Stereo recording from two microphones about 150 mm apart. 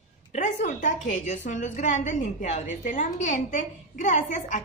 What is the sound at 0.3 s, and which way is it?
A woman's voice, 55° left (ahead or behind).